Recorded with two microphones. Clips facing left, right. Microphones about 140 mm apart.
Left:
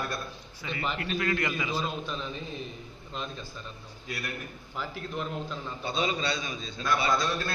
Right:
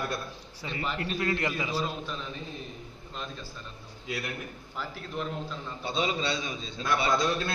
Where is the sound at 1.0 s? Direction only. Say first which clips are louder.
Even; 30° right (ahead or behind).